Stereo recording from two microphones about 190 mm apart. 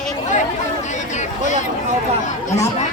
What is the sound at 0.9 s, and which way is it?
Speech, 40° left (ahead or behind).